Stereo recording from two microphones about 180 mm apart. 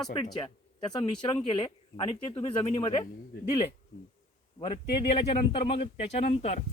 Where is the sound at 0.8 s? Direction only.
25° left (ahead or behind).